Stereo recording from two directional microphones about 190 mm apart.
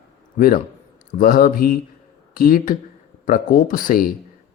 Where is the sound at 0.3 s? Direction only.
45° left (ahead or behind).